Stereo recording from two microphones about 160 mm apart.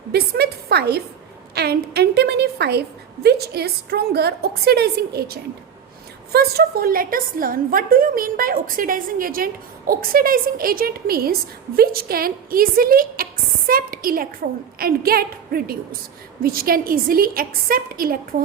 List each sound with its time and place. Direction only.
0.1 s a woman's voice: 85° right; by 18.3 s 65° right (ahead or behind)